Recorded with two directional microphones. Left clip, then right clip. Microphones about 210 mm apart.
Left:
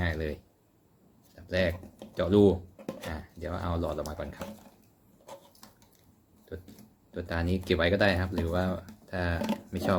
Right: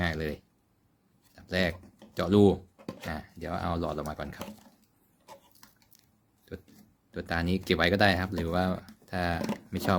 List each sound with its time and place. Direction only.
0.0 s a sound: 55° right (ahead or behind)
1.5 s speech: 55° right (ahead or behind)
6.5 s speech: 55° right (ahead or behind)